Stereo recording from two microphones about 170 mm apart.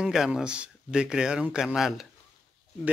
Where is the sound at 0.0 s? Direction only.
5° right (ahead or behind).